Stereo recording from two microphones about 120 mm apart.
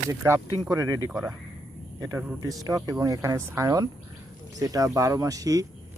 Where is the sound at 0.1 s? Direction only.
20° right (ahead or behind).